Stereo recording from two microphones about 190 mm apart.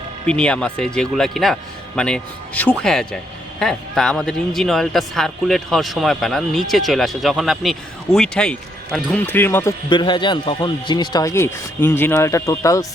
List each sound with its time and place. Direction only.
0.3 s speech: 5° left (ahead or behind)
9.9 s speech: 25° left (ahead or behind)